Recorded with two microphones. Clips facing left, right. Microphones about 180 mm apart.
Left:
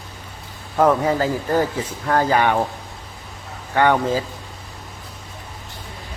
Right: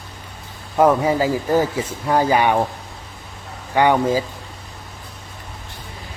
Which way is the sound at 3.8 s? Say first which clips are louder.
Right 1 dB; 10° right (ahead or behind).